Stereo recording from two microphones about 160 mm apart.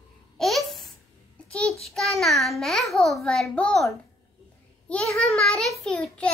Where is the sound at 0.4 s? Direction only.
Centre (ahead or behind).